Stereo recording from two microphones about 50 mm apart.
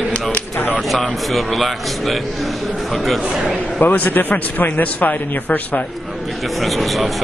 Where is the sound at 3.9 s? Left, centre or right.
Left.